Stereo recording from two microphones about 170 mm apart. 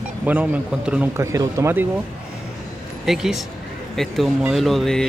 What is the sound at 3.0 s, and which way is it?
Speech, centre (ahead or behind).